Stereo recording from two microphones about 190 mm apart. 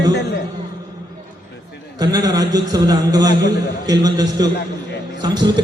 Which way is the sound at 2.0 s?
20° right (ahead or behind).